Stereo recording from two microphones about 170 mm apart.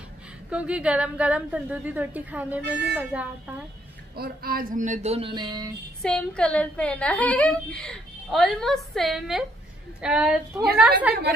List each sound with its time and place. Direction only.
0.5 s a woman's voice: 5° right (ahead or behind)
4.2 s a sound: 60° right (ahead or behind); by 5.7 s 25° right (ahead or behind)
6.0 s a woman's voice: 5° left (ahead or behind)